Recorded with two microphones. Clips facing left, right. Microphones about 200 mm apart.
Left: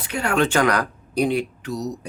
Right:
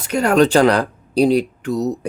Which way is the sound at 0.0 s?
40° right (ahead or behind).